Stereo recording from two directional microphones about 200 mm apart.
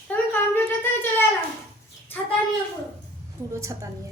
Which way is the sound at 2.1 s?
10° left (ahead or behind).